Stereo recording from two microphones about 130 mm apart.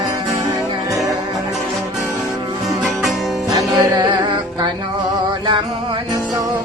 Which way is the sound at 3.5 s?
30° right (ahead or behind).